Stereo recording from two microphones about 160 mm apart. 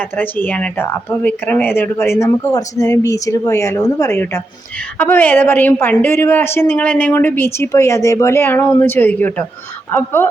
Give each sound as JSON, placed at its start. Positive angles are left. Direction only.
{"t": 0.2, "sound": "a woman's voice", "side_deg": 10}